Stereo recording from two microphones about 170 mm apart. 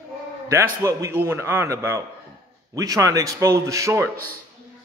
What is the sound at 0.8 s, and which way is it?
A man's voice, 15° right (ahead or behind).